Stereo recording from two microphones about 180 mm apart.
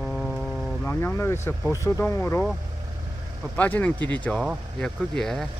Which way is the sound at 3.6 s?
10° left (ahead or behind).